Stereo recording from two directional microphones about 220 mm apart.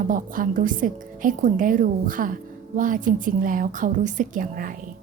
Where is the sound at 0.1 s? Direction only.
40° right (ahead or behind).